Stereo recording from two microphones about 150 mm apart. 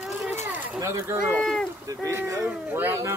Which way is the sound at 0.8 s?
20° right (ahead or behind).